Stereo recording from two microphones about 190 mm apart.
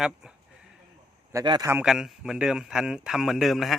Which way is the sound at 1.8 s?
Centre (ahead or behind).